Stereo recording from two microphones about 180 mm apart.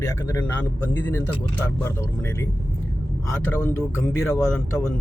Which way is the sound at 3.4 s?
15° left (ahead or behind).